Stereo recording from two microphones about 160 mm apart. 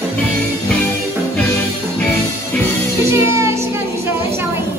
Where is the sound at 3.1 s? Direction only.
15° right (ahead or behind).